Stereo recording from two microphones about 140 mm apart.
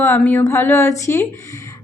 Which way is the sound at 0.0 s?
15° left (ahead or behind).